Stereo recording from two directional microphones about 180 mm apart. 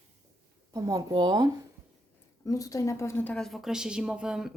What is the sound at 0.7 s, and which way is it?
Speech, 20° right (ahead or behind).